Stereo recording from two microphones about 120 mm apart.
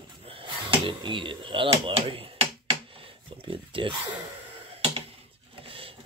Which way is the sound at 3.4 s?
45° right (ahead or behind).